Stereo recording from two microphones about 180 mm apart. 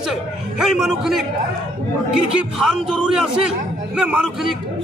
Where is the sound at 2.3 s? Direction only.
Centre (ahead or behind).